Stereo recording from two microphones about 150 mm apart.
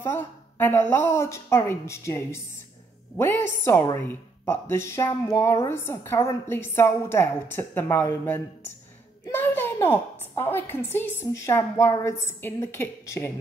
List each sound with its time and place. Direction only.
0.0 s speech: 15° left (ahead or behind)
9.3 s a sound: 15° left (ahead or behind)
10.3 s speech: 15° left (ahead or behind)